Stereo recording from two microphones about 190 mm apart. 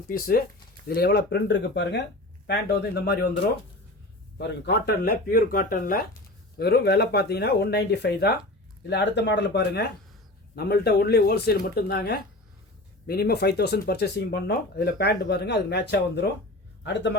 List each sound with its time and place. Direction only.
0.1 s speech: 50° left (ahead or behind)
4.4 s a man's voice: 65° left (ahead or behind)